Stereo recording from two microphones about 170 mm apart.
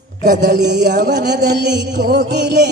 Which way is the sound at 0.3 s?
80° right.